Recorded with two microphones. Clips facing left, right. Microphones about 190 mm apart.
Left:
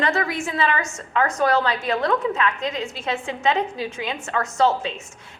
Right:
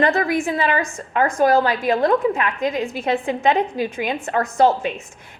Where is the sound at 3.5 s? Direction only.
15° right (ahead or behind).